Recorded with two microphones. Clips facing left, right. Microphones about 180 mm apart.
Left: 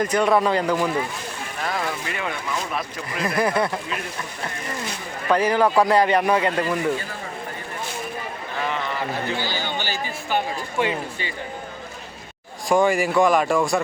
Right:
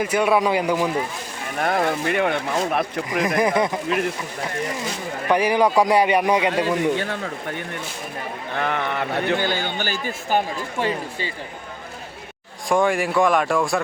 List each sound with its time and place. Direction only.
0.0 s speech: 10° right (ahead or behind)
1.5 s a man's voice: 55° right (ahead or behind)
3.2 s speech: 15° right (ahead or behind)
5.3 s speech: 15° right (ahead or behind)
6.9 s speech: 75° right (ahead or behind)
8.5 s a man's voice: 60° right (ahead or behind); by 11.3 s 40° right (ahead or behind)
12.6 s speech: centre (ahead or behind)